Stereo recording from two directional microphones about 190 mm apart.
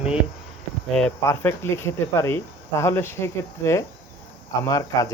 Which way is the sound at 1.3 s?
15° left (ahead or behind).